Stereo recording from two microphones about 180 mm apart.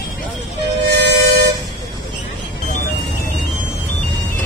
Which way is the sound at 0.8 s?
70° right (ahead or behind).